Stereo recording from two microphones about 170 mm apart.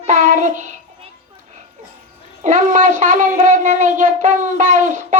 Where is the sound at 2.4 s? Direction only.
45° right (ahead or behind).